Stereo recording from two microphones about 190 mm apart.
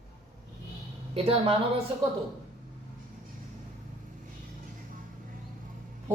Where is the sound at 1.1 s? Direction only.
30° right (ahead or behind).